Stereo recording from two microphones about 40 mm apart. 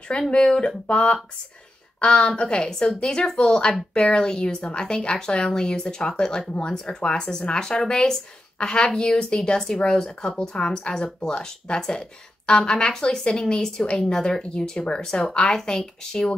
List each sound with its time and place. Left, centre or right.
0.3 s a woman's voice: left